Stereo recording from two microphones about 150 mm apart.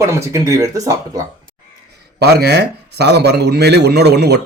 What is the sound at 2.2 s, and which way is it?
A man's voice, 90° right.